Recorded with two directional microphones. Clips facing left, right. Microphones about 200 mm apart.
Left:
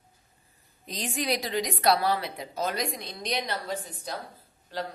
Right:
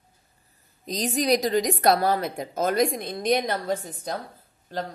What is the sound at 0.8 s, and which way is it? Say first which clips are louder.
Speech: right 7 dB; 40° right (ahead or behind).